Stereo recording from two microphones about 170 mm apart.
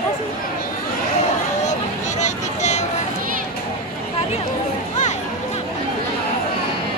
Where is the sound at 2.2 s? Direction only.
45° left (ahead or behind).